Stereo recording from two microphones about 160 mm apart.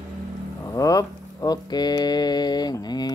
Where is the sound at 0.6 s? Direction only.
20° left (ahead or behind).